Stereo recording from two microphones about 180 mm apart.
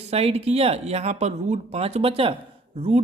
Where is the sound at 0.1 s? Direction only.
35° right (ahead or behind).